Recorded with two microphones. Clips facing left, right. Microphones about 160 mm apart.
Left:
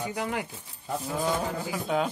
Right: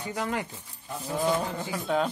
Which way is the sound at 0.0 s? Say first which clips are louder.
Even; 10° left (ahead or behind).